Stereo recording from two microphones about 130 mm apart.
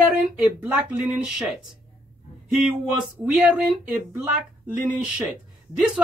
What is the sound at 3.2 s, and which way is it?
Speech, 10° right (ahead or behind).